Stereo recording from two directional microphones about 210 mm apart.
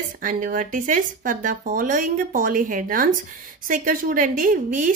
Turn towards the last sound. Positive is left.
turn(degrees=-40)  # may be behind; listen again after turning